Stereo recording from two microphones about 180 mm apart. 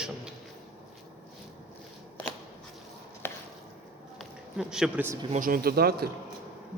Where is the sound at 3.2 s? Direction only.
10° left (ahead or behind).